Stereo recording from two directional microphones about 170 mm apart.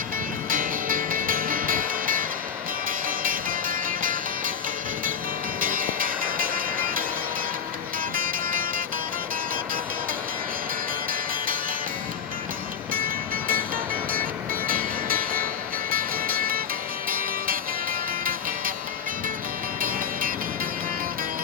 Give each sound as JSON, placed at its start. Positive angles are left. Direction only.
{"t": 0.5, "sound": "music", "side_deg": -55}
{"t": 5.5, "sound": "music", "side_deg": -55}
{"t": 8.1, "sound": "music", "side_deg": -55}
{"t": 12.9, "sound": "music", "side_deg": -55}
{"t": 14.7, "sound": "vehicle", "side_deg": -55}
{"t": 15.9, "sound": "music", "side_deg": -55}